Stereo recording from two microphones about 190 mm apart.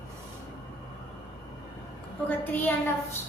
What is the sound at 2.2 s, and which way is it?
Speech, 10° left (ahead or behind).